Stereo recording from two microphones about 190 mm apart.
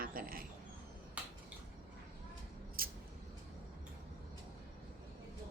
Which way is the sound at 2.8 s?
50° right (ahead or behind).